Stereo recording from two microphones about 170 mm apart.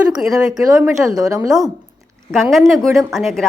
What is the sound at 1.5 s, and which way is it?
A woman's voice, centre (ahead or behind).